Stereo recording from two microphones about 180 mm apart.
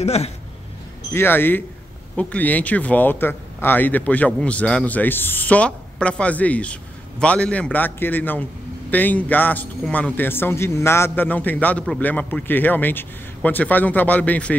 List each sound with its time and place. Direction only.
0.0 s speech: 35° left (ahead or behind)
1.1 s speech: 10° left (ahead or behind)